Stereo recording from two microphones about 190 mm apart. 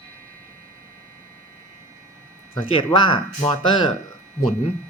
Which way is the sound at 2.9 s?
25° left (ahead or behind).